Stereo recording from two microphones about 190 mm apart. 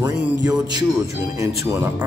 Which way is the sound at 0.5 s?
20° right (ahead or behind).